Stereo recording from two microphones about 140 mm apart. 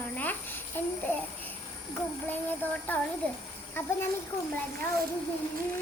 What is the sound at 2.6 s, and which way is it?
Speech, 15° left (ahead or behind).